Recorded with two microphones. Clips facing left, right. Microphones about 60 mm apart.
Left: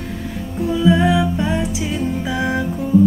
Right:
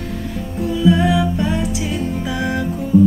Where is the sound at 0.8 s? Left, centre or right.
Centre.